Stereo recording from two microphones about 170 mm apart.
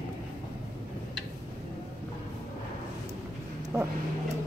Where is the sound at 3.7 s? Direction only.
15° right (ahead or behind).